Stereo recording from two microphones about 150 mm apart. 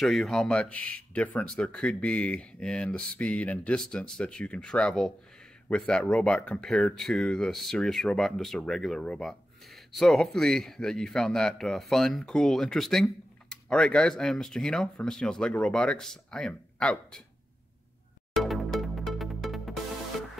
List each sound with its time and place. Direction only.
0.0 s speech: 5° left (ahead or behind)
18.3 s music: centre (ahead or behind)